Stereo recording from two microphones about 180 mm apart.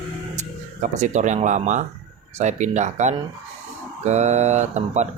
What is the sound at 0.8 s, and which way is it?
Speech, 40° right (ahead or behind).